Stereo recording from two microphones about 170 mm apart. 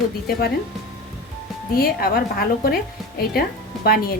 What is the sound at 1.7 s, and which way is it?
A woman's voice, 65° left (ahead or behind).